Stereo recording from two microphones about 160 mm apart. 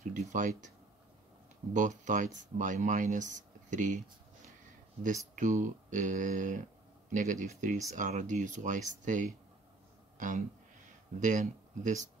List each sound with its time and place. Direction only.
0.1 s a sound: 50° right (ahead or behind)
1.7 s speech: 50° right (ahead or behind)
5.3 s speech: 50° right (ahead or behind)